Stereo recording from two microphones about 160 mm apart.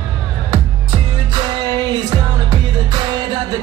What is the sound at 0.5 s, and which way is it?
Music, 30° right (ahead or behind).